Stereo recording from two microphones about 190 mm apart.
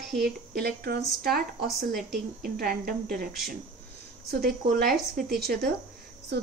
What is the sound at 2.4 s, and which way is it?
Speech, 50° right (ahead or behind).